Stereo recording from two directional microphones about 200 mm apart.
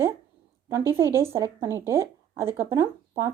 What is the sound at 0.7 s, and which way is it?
A woman's voice, 15° right (ahead or behind).